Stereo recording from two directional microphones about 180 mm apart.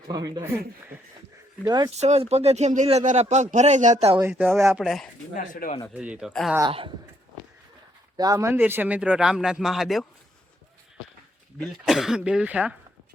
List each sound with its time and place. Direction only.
0.1 s speech: 20° right (ahead or behind)
1.6 s speech: 25° right (ahead or behind)
2.0 s speech: 35° right (ahead or behind)
4.2 s speech: 10° right (ahead or behind)
5.4 s speech: 45° left (ahead or behind)
5.9 s speech: 5° right (ahead or behind)
6.7 s speech: 30° right (ahead or behind)
8.1 s speech: 20° right (ahead or behind); by 10.1 s centre (ahead or behind)
11.6 s speech: centre (ahead or behind)